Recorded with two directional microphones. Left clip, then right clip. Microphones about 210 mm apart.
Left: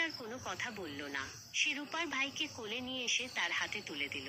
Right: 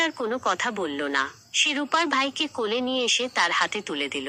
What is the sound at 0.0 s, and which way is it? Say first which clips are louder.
A woman's voice: right 14 dB; 45° right (ahead or behind).